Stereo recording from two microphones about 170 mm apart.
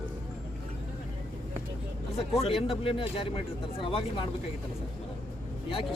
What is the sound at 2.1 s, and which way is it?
Speech, 35° left (ahead or behind).